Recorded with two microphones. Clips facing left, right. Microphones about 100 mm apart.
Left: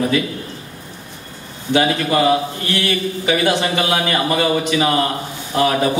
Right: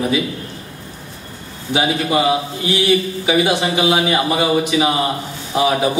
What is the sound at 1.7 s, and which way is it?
A man's voice, 10° right (ahead or behind).